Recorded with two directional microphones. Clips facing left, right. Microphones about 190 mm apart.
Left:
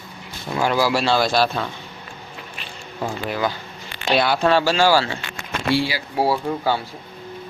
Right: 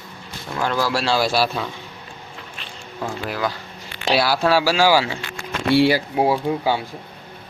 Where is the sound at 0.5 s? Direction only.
10° left (ahead or behind); by 1.6 s 5° right (ahead or behind).